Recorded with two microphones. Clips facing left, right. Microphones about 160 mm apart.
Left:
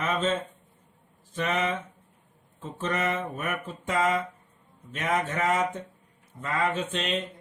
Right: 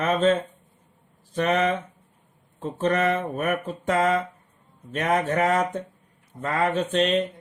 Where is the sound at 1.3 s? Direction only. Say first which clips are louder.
Right 6 dB; 50° right (ahead or behind).